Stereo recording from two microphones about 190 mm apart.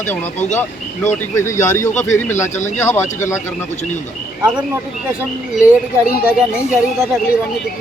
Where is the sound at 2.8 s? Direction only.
15° left (ahead or behind).